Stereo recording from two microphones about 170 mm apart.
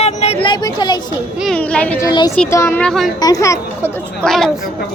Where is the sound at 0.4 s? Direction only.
25° left (ahead or behind).